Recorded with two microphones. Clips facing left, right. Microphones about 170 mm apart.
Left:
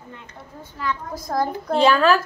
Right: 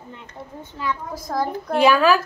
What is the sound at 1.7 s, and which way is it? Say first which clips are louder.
Speech: even; 10° right (ahead or behind).